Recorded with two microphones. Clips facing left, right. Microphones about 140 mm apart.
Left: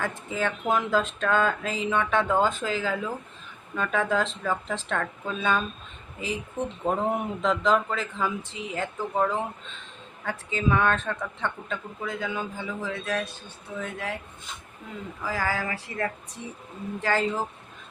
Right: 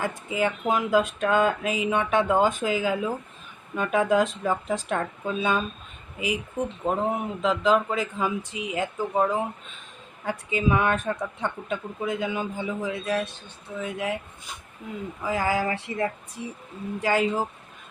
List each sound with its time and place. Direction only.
0.0 s speech: 15° right (ahead or behind)
15.2 s speech: 20° right (ahead or behind)
17.0 s speech: 15° right (ahead or behind)